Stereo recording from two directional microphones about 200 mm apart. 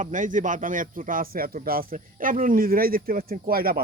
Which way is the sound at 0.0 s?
40° right (ahead or behind).